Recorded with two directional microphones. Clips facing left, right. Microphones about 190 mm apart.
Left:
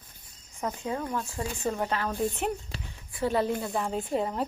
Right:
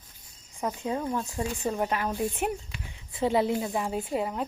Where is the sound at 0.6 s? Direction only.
15° right (ahead or behind).